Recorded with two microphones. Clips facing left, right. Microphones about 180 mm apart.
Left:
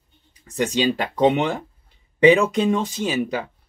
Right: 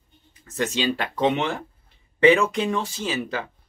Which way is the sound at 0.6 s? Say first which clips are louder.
Left 4 dB; 15° left (ahead or behind).